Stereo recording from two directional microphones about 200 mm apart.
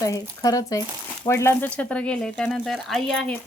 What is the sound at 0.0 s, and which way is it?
Speech, 15° left (ahead or behind).